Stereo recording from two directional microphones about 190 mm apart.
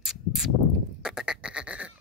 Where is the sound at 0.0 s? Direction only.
Centre (ahead or behind).